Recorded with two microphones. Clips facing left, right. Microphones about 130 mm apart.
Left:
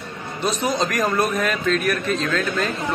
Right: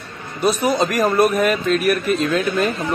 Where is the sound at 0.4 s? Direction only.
5° right (ahead or behind).